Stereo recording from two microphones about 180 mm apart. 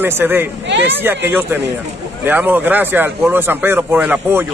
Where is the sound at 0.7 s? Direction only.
75° right (ahead or behind).